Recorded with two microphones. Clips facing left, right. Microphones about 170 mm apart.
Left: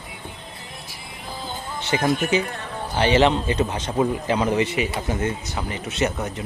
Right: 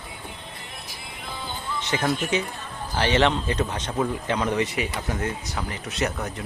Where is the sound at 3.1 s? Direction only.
5° left (ahead or behind).